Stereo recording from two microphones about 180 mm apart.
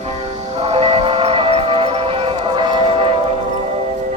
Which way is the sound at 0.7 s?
35° right (ahead or behind).